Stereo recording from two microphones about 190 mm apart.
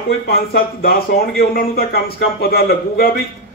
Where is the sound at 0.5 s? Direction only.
55° left (ahead or behind).